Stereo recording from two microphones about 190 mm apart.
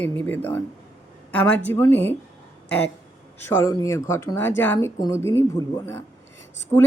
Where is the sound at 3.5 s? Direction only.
15° left (ahead or behind).